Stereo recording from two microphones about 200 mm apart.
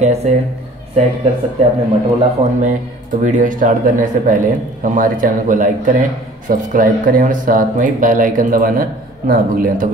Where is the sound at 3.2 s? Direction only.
40° right (ahead or behind).